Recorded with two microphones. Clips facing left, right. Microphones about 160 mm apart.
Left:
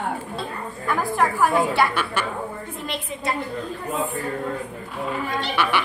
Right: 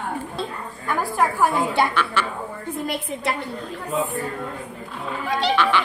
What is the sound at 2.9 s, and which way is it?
Speech, 65° right (ahead or behind).